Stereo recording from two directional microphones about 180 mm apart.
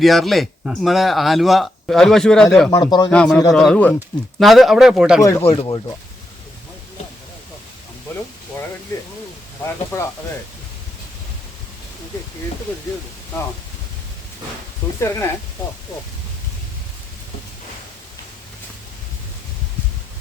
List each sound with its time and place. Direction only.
0.0 s speech: centre (ahead or behind)
2.6 s speech: 20° left (ahead or behind)
3.1 s speech: 5° left (ahead or behind)
5.4 s speech: 30° left (ahead or behind)
14.9 s speech: 15° left (ahead or behind)